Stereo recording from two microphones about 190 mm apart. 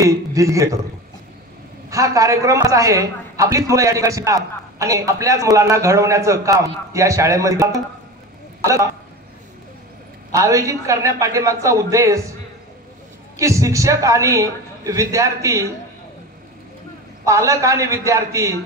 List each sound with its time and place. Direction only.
0.0 s a man's voice: 15° right (ahead or behind)
1.9 s a man's voice: 15° right (ahead or behind)
10.3 s a man's voice: 15° right (ahead or behind)
13.4 s a man's voice: 15° right (ahead or behind)
17.2 s a man's voice: 15° right (ahead or behind)